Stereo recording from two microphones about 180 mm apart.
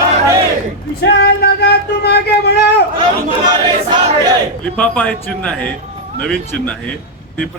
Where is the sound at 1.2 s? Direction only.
65° left (ahead or behind).